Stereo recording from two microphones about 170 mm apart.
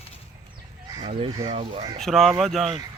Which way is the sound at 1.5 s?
35° right (ahead or behind).